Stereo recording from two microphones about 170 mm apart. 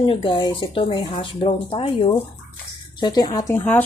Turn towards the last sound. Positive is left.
turn(degrees=10)  # may be behind; listen again after turning